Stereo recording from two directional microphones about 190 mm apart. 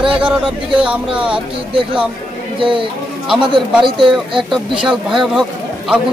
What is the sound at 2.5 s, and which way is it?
Speech, 25° right (ahead or behind).